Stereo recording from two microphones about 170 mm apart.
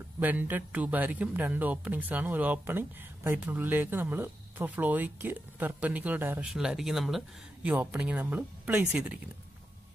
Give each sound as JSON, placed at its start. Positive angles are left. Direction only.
{"t": 0.2, "sound": "a man's voice", "side_deg": -10}